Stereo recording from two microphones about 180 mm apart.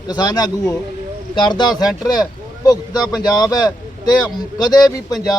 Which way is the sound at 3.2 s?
20° left (ahead or behind).